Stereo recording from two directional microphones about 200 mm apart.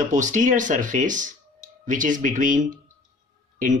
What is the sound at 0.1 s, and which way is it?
Speech, 40° right (ahead or behind).